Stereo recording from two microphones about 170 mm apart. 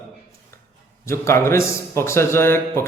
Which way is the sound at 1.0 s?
15° left (ahead or behind).